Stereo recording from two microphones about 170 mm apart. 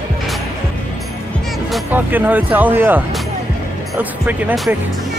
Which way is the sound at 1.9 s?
10° right (ahead or behind).